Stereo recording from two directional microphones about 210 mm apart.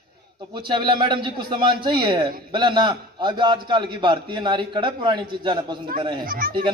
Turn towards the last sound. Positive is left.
turn(degrees=-45)  # may be behind; listen again after turning